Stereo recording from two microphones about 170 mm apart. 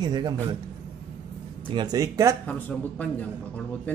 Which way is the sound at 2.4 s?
10° left (ahead or behind).